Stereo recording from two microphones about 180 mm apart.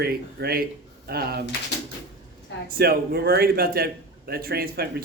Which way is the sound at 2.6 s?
55° right (ahead or behind).